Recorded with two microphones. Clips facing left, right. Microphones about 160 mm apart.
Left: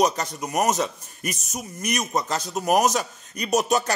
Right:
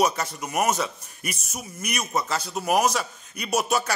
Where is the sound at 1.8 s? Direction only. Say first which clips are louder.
Left 2 dB; 40° left (ahead or behind).